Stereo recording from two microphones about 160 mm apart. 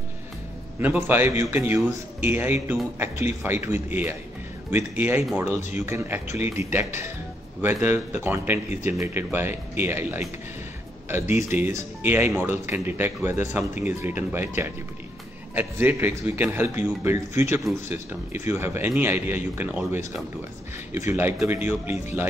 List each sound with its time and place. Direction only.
0.7 s speech: 10° right (ahead or behind)